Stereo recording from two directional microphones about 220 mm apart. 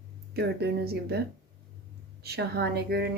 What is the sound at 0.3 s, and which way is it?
Speech, 45° right (ahead or behind).